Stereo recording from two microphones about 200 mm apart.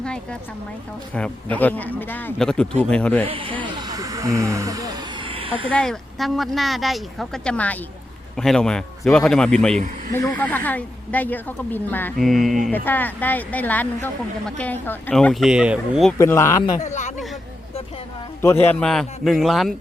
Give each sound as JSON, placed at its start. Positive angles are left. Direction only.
{"t": 0.0, "sound": "speech", "side_deg": 5}
{"t": 3.2, "sound": "a sound", "side_deg": -25}
{"t": 5.6, "sound": "speech", "side_deg": 5}
{"t": 16.1, "sound": "speech", "side_deg": 15}
{"t": 16.8, "sound": "speech", "side_deg": 35}
{"t": 18.6, "sound": "speech", "side_deg": 5}